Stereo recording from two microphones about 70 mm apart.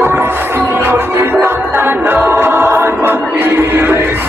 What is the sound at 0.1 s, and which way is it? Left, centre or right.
Music, right.